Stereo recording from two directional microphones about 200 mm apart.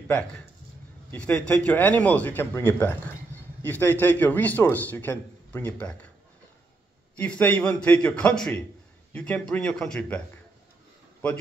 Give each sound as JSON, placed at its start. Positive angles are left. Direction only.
{"t": 1.1, "sound": "a man's voice", "side_deg": 5}
{"t": 7.2, "sound": "a man's voice", "side_deg": 10}